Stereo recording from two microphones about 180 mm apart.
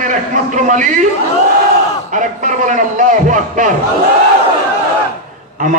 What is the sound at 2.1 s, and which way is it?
A man's voice, 45° right (ahead or behind).